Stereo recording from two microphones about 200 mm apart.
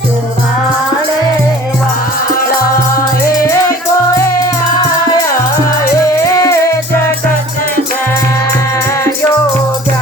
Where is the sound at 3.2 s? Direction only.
15° left (ahead or behind).